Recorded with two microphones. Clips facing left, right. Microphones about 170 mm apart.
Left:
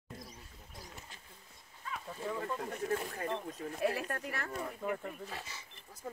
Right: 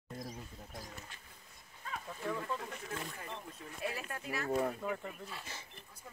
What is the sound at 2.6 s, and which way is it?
Speech, 45° left (ahead or behind).